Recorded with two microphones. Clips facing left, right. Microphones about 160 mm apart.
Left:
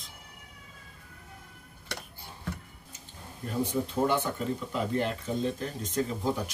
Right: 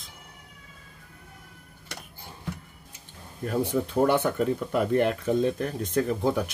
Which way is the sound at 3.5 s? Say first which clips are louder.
Right 4 dB; 65° right (ahead or behind).